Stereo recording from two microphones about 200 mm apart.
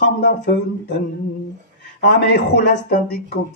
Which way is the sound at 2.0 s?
55° left (ahead or behind).